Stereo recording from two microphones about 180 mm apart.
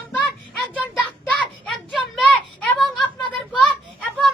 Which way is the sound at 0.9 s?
5° left (ahead or behind).